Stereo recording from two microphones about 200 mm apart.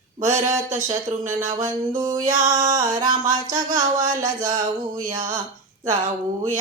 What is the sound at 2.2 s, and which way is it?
Music, 40° right (ahead or behind).